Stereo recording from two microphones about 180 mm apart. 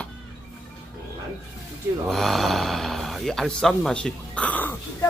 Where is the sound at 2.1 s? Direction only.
Centre (ahead or behind).